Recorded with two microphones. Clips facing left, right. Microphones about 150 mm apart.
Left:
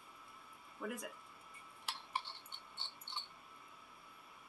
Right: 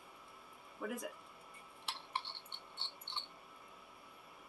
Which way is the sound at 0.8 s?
5° right (ahead or behind).